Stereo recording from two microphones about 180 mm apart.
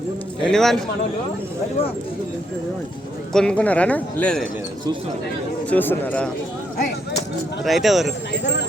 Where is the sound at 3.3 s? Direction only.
5° left (ahead or behind).